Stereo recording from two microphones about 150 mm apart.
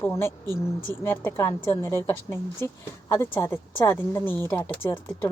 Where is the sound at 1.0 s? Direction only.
15° left (ahead or behind).